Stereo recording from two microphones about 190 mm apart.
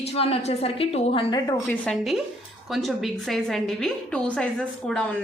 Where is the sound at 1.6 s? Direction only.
5° left (ahead or behind).